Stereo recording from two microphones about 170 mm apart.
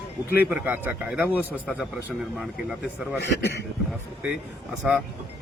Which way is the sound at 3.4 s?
80° left.